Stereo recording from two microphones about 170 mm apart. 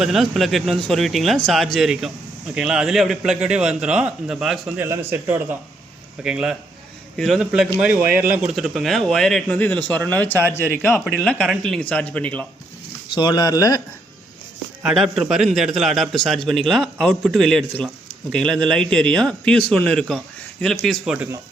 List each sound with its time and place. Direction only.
0.0 s a man's voice: centre (ahead or behind)
4.8 s a man's voice: 15° right (ahead or behind); by 12.5 s 10° left (ahead or behind)
13.1 s speech: 25° left (ahead or behind)
14.8 s a man's voice: centre (ahead or behind)